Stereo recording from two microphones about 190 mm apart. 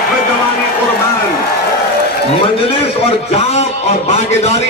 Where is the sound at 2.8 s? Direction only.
30° left (ahead or behind).